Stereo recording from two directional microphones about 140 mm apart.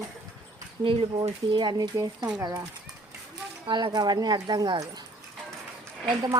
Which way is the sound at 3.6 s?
30° right (ahead or behind).